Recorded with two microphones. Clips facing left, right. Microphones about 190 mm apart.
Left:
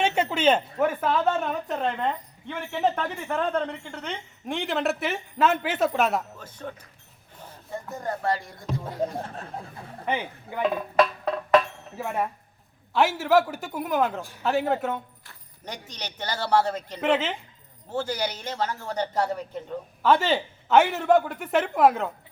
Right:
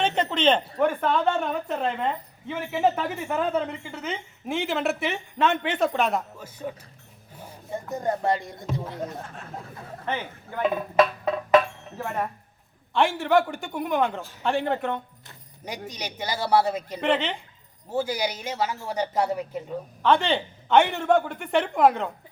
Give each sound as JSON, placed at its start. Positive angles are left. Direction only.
{"t": 0.0, "sound": "a woman's voice", "side_deg": 10}
{"t": 6.3, "sound": "a man's voice", "side_deg": -10}
{"t": 7.3, "sound": "a sound", "side_deg": -10}
{"t": 7.9, "sound": "speech", "side_deg": -20}
{"t": 9.1, "sound": "speech", "side_deg": 30}
{"t": 10.1, "sound": "speech", "side_deg": 10}
{"t": 10.6, "sound": "a woman's voice", "side_deg": 0}
{"t": 15.3, "sound": "keys jangling", "side_deg": -10}
{"t": 15.9, "sound": "a man's voice", "side_deg": -10}
{"t": 17.0, "sound": "a woman's voice", "side_deg": 5}
{"t": 17.9, "sound": "a man's voice", "side_deg": -10}
{"t": 20.0, "sound": "a woman's voice", "side_deg": 5}